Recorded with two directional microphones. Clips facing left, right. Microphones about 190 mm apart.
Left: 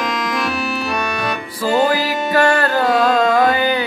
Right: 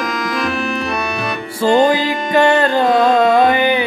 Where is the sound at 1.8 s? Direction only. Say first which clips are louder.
Right 2 dB; 20° right (ahead or behind).